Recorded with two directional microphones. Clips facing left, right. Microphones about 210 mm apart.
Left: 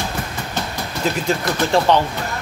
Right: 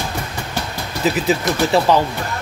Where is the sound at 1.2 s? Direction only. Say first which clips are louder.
Right 2 dB; 5° right (ahead or behind).